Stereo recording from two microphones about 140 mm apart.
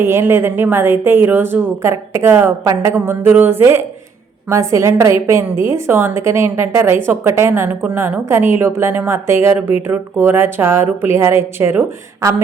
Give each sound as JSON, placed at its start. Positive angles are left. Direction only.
{"t": 0.0, "sound": "a woman's voice", "side_deg": -15}